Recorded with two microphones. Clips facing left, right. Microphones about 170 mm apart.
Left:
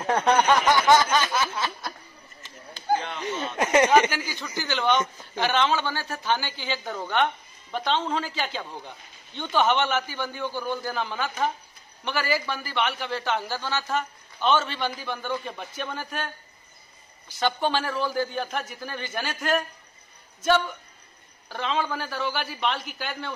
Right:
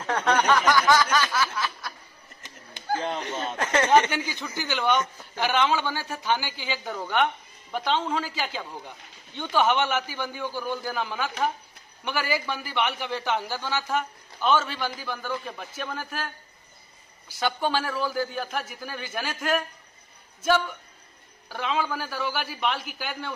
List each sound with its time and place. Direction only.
0.0 s a sound: 15° left (ahead or behind)
3.0 s speech: 40° right (ahead or behind)
3.5 s speech: 10° left (ahead or behind)
4.1 s a man's voice: 20° right (ahead or behind)
4.9 s a man's voice: 20° left (ahead or behind)
5.4 s a man's voice: 10° right (ahead or behind)
17.4 s a man's voice: 5° right (ahead or behind)
21.5 s a man's voice: 5° right (ahead or behind)